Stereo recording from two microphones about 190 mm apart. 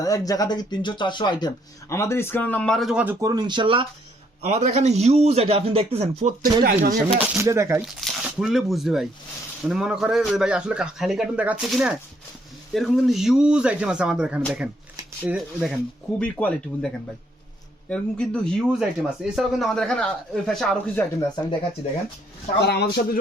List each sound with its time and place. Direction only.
0.0 s speech: 20° left (ahead or behind); by 3.8 s 25° right (ahead or behind)
4.4 s a man's voice: 35° right (ahead or behind)
6.4 s speech: 50° right (ahead or behind)
7.3 s speech: 15° right (ahead or behind)
7.8 s speech: centre (ahead or behind)
22.6 s a man's voice: 60° left (ahead or behind)